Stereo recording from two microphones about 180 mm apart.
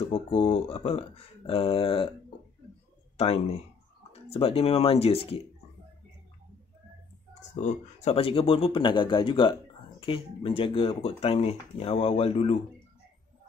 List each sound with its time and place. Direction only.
0.1 s speech: 30° left (ahead or behind)
3.2 s speech: 35° left (ahead or behind)
7.6 s speech: 35° left (ahead or behind)